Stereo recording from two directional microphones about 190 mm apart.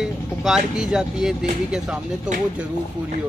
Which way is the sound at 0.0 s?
Centre (ahead or behind).